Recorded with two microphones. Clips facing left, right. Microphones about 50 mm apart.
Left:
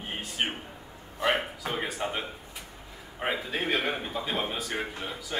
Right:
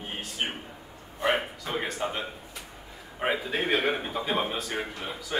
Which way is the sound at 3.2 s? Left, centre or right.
Centre.